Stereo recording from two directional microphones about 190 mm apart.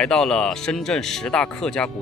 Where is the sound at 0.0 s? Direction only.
5° left (ahead or behind).